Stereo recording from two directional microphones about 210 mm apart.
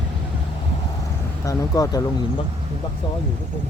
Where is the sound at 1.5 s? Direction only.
15° left (ahead or behind).